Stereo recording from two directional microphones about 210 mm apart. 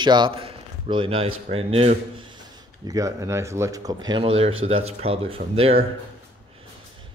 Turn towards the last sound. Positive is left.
turn(degrees=-25)  # may be behind; listen again after turning